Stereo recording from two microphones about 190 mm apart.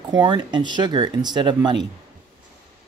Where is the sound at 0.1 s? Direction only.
25° right (ahead or behind).